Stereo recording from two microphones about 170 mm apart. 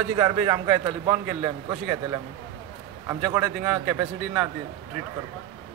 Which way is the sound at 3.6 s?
10° right (ahead or behind).